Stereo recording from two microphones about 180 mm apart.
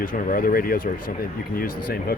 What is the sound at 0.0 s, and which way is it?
Speech, 50° left (ahead or behind).